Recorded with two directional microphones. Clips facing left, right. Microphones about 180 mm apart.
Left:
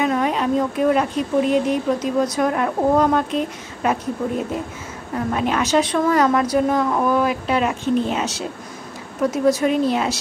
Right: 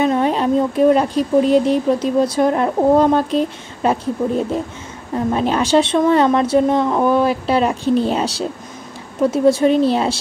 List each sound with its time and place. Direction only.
0.0 s a woman's voice: 30° right (ahead or behind)